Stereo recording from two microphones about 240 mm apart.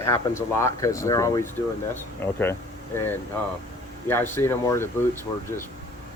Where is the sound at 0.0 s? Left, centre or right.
Centre.